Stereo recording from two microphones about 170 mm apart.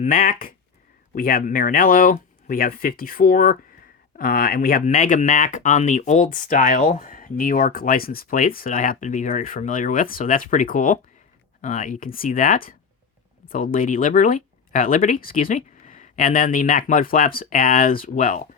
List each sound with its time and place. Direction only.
0.0 s speech: 55° left (ahead or behind)